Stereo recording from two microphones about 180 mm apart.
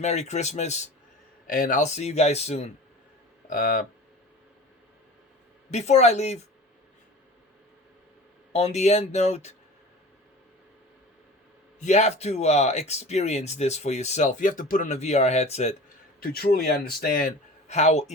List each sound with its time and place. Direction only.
0.0 s speech: 40° left (ahead or behind)
1.5 s speech: 50° left (ahead or behind)
3.5 s speech: 50° left (ahead or behind)
5.7 s speech: 40° left (ahead or behind)
8.5 s speech: 40° left (ahead or behind)
11.8 s speech: 40° left (ahead or behind)
16.2 s speech: 55° left (ahead or behind); by 18.1 s 40° left (ahead or behind)